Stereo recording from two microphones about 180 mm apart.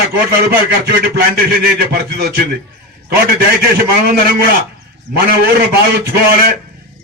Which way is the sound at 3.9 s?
55° right (ahead or behind).